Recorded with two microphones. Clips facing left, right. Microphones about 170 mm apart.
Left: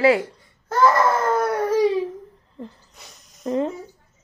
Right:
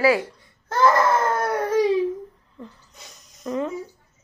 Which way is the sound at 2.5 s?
35° left (ahead or behind).